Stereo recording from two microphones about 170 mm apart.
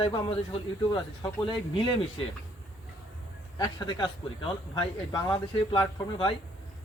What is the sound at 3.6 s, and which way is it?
Speech, 25° left (ahead or behind).